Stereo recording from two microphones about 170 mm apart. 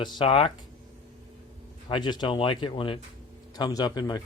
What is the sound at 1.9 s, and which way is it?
Speech, 25° left (ahead or behind).